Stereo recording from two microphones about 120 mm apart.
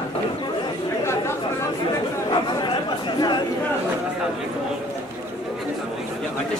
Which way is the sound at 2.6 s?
40° left (ahead or behind).